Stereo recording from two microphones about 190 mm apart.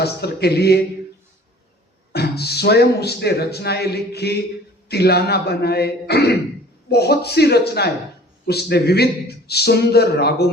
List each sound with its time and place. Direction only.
0.0 s a man's voice: 60° left (ahead or behind)
2.1 s a man's voice: 55° left (ahead or behind)